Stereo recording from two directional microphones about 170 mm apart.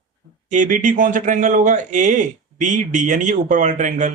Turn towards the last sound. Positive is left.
turn(degrees=-45)  # may be behind; listen again after turning